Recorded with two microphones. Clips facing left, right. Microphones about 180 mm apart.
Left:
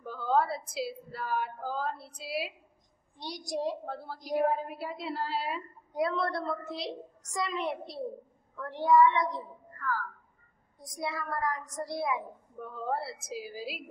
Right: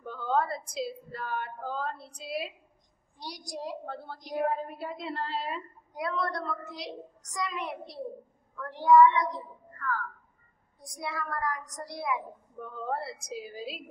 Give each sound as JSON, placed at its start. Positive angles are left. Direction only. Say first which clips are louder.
{"t": 0.0, "sound": "a sound", "louder": "left 1 dB", "side_deg": 5}
{"t": 0.7, "sound": "a woman's voice", "louder": "right 1 dB", "side_deg": 5}
{"t": 3.2, "sound": "a woman's voice", "louder": "left 5 dB", "side_deg": 25}
{"t": 3.8, "sound": "a woman's voice", "louder": "left 1 dB", "side_deg": 5}
{"t": 5.9, "sound": "a woman's voice", "louder": "left 2 dB", "side_deg": 30}
{"t": 9.8, "sound": "speech", "louder": "even", "side_deg": 5}
{"t": 10.8, "sound": "a woman's voice", "louder": "left 1 dB", "side_deg": 25}
{"t": 12.6, "sound": "a woman's voice", "louder": "even", "side_deg": 5}